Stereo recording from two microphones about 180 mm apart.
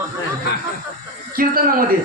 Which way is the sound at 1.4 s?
55° right (ahead or behind).